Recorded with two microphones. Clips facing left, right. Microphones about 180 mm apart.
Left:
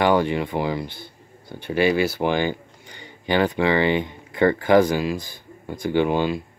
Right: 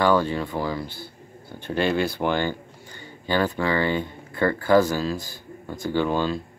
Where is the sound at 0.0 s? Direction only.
15° left (ahead or behind).